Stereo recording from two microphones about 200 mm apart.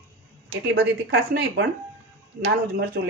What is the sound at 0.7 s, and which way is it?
Speech, 60° right (ahead or behind).